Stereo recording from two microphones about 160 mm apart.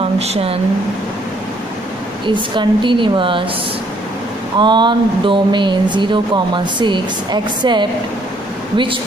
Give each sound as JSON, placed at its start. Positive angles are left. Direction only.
{"t": 0.2, "sound": "a woman's voice", "side_deg": -40}
{"t": 2.2, "sound": "a woman's voice", "side_deg": -30}
{"t": 4.6, "sound": "speech", "side_deg": -30}